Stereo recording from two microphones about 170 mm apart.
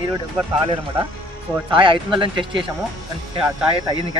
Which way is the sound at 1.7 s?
30° right (ahead or behind).